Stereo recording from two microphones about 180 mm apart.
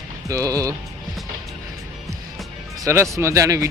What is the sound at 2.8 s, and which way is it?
Speech, 15° right (ahead or behind).